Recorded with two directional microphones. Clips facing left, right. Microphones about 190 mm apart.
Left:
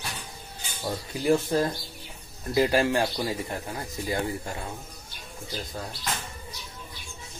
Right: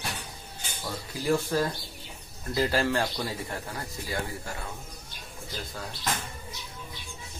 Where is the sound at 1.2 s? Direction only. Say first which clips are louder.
Left 3 dB; 20° left (ahead or behind).